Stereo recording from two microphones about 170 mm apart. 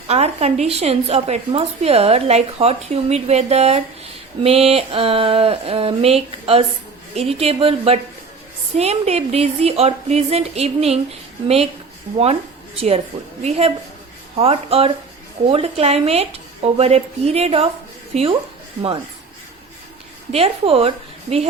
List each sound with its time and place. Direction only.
0.1 s a woman's voice: 40° right (ahead or behind)
20.3 s a woman's voice: 35° right (ahead or behind)